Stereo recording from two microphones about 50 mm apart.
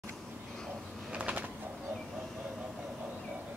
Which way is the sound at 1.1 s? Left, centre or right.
Right.